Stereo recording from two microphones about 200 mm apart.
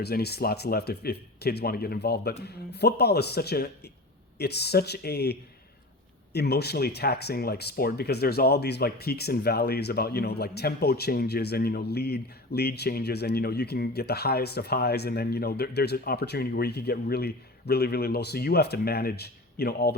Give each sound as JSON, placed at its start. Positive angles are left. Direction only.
{"t": 0.0, "sound": "speech", "side_deg": 55}